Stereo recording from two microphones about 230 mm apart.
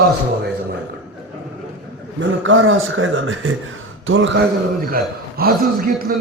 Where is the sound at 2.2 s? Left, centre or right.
Right.